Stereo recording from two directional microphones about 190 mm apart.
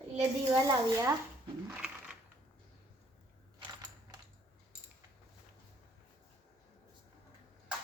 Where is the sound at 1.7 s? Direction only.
5° right (ahead or behind).